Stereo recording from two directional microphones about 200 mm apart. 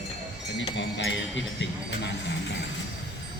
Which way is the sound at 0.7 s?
65° left (ahead or behind).